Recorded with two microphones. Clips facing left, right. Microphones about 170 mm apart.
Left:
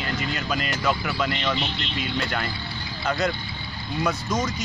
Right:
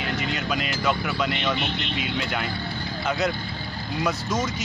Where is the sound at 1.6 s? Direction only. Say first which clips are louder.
Right 1 dB; 55° right (ahead or behind).